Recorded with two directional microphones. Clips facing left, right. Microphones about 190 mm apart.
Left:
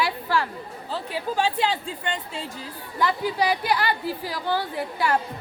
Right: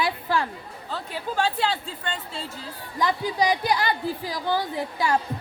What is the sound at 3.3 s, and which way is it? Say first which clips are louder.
A woman's voice: right 2 dB; 15° right (ahead or behind).